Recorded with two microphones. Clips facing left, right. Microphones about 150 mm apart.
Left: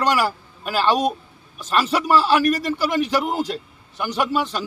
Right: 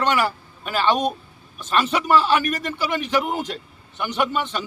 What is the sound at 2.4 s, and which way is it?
Speech, 35° left (ahead or behind).